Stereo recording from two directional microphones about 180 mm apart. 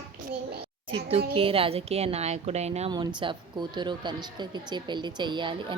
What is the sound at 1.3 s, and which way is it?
A woman's voice, 30° right (ahead or behind).